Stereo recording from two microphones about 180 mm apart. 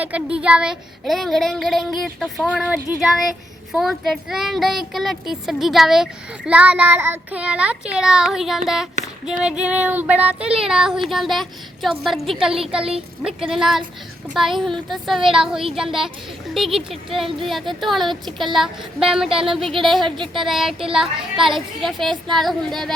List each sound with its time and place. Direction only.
0.0 s child singing: 5° right (ahead or behind)
19.5 s speech: 30° right (ahead or behind)
19.8 s child singing: centre (ahead or behind)